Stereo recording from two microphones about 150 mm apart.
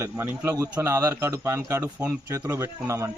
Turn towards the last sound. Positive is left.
turn(degrees=-20)  # may be behind; listen again after turning